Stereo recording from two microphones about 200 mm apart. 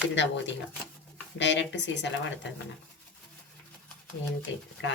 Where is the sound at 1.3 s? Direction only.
65° left (ahead or behind).